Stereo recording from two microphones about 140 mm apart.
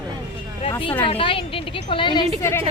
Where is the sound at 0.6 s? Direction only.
40° left (ahead or behind).